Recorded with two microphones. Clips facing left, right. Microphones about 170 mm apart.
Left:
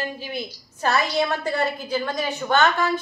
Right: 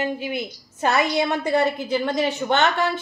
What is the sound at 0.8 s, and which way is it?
A woman's voice, 20° right (ahead or behind).